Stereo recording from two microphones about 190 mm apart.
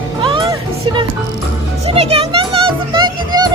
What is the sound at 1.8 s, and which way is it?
Music, 30° right (ahead or behind).